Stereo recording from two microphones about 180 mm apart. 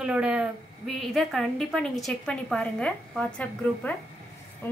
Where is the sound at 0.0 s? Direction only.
5° right (ahead or behind).